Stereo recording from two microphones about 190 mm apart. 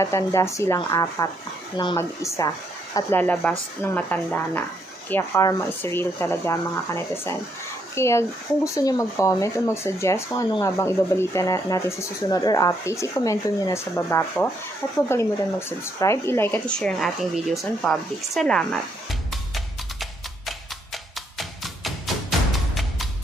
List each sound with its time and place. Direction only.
0.0 s speech: 15° left (ahead or behind)
19.3 s music: centre (ahead or behind)